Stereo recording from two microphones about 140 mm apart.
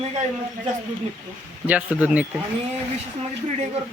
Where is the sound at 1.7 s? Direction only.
10° right (ahead or behind).